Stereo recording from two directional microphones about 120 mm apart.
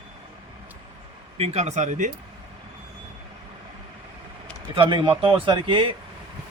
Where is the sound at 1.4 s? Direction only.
65° right (ahead or behind).